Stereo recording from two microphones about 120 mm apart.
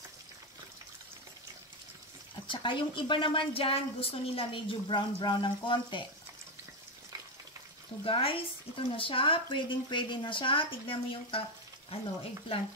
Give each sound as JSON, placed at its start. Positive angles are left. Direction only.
{"t": 2.4, "sound": "a woman's voice", "side_deg": 45}
{"t": 8.0, "sound": "a woman's voice", "side_deg": 50}